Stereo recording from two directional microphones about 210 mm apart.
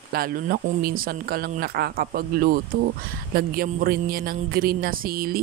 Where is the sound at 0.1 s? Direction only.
45° right (ahead or behind).